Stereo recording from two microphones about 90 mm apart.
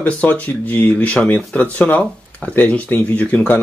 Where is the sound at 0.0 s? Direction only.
15° left (ahead or behind).